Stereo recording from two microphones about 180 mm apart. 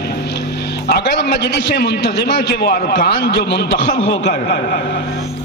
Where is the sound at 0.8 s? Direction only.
65° left (ahead or behind).